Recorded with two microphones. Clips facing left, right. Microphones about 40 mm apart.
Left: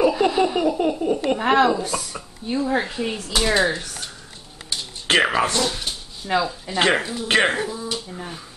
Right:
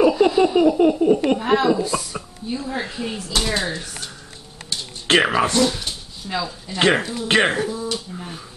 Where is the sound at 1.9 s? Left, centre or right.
Right.